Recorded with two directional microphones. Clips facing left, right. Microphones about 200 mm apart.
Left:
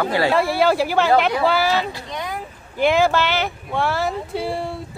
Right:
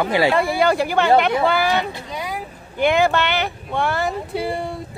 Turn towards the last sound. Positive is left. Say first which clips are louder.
# right 1 dB
turn(degrees=0)  # may be behind; listen again after turning